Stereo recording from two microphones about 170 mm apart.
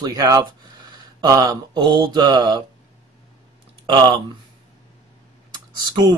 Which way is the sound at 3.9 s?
25° right (ahead or behind).